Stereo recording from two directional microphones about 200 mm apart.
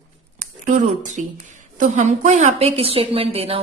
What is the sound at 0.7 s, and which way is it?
A woman's voice, 35° right (ahead or behind).